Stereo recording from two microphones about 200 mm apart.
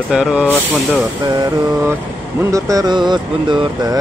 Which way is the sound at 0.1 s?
5° right (ahead or behind).